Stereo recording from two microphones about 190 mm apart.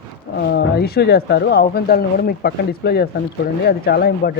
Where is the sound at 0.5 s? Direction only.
55° left (ahead or behind).